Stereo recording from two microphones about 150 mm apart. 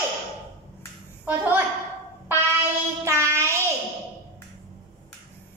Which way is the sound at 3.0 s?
20° right (ahead or behind).